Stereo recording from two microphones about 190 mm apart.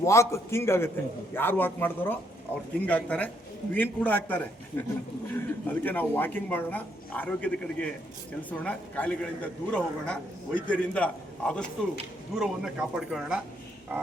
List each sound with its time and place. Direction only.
0.0 s a man's voice: 15° left (ahead or behind); by 13.4 s 5° right (ahead or behind)
13.9 s dog: 10° right (ahead or behind)